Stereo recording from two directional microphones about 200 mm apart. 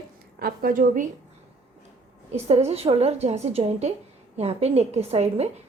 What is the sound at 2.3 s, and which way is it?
A woman's voice, 30° right (ahead or behind).